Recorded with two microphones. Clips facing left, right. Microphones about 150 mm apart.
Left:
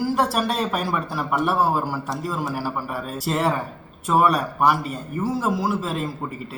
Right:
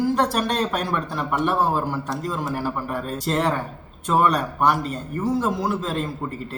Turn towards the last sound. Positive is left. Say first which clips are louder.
# even
turn(degrees=5)  # may be behind; listen again after turning